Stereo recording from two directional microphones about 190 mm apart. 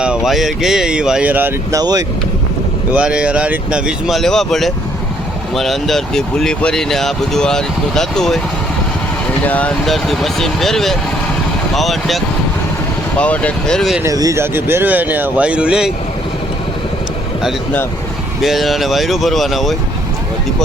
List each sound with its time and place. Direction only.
0.0 s speech: 5° right (ahead or behind); by 2.0 s 20° right (ahead or behind)
2.9 s speech: 5° right (ahead or behind)
9.4 s speech: 10° left (ahead or behind)
14.0 s speech: 15° right (ahead or behind)
18.4 s speech: centre (ahead or behind)